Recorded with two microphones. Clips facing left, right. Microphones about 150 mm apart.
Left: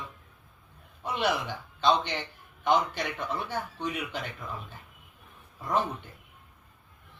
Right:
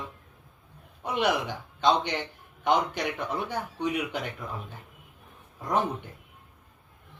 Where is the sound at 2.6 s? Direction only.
15° right (ahead or behind).